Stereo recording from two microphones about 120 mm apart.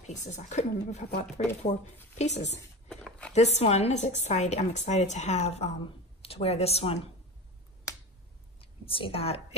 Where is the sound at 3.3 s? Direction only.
65° left (ahead or behind).